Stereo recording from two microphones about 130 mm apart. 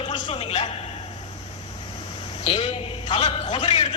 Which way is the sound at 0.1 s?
45° left (ahead or behind).